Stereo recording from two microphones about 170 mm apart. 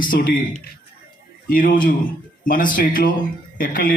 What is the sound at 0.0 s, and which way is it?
A man's voice, 55° left (ahead or behind).